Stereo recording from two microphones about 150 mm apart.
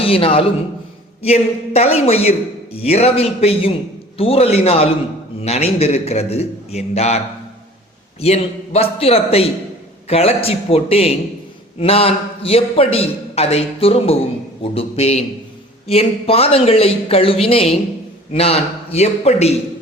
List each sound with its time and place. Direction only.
0.0 s a man's voice: 40° left (ahead or behind)
8.2 s a man's voice: 45° left (ahead or behind)